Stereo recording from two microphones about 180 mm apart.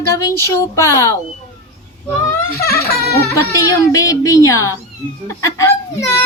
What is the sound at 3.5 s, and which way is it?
Speech, 20° left (ahead or behind).